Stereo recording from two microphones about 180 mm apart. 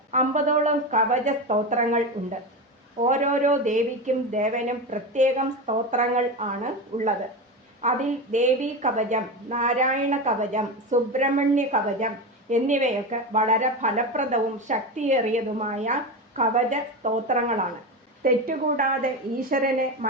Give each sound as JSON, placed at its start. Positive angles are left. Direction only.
{"t": 0.1, "sound": "speech", "side_deg": -45}
{"t": 3.1, "sound": "a woman's voice", "side_deg": -40}